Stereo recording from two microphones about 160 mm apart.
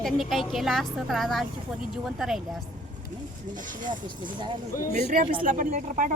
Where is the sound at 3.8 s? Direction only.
30° right (ahead or behind).